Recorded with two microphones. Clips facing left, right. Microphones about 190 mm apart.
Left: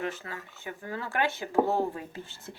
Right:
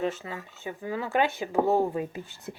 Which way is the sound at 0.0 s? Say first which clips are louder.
Right 4 dB; 20° right (ahead or behind).